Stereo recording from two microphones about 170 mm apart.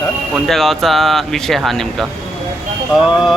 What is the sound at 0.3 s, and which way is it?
Speech, centre (ahead or behind).